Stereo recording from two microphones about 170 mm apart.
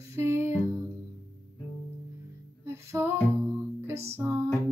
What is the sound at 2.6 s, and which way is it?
Music, 15° right (ahead or behind).